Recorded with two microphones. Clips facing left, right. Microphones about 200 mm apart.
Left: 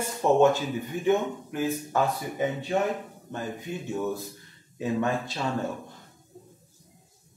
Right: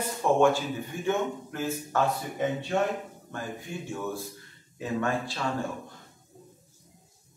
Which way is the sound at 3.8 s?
20° left (ahead or behind).